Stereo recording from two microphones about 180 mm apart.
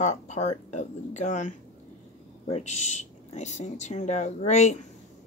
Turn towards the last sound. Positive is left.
turn(degrees=40)  # may be behind; listen again after turning